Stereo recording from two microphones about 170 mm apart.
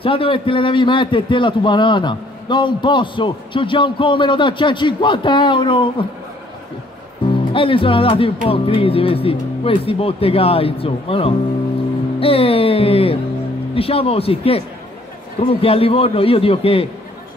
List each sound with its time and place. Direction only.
0.0 s a man's voice: 30° left (ahead or behind)
7.5 s speech: 30° left (ahead or behind)